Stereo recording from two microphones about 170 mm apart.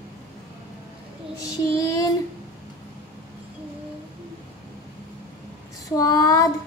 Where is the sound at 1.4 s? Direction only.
20° left (ahead or behind).